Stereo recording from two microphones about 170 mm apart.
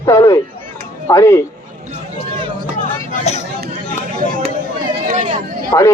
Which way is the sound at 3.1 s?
40° left (ahead or behind).